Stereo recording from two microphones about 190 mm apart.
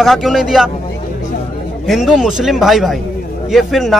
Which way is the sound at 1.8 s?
Centre (ahead or behind).